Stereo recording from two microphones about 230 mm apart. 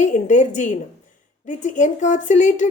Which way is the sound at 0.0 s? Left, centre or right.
Left.